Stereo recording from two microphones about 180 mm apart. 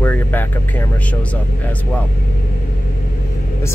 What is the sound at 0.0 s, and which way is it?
Vehicle, 10° left (ahead or behind).